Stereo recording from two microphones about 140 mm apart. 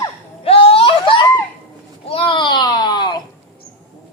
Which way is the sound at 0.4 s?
40° left (ahead or behind).